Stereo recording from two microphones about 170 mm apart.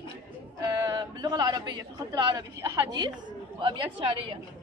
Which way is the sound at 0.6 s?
20° right (ahead or behind).